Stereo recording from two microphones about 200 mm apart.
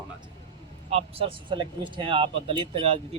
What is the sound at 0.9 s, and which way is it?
Speech, 30° right (ahead or behind).